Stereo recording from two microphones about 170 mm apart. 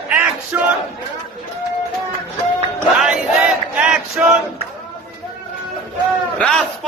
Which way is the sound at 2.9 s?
Centre (ahead or behind).